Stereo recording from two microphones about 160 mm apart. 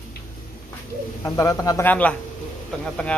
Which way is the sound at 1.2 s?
20° left (ahead or behind).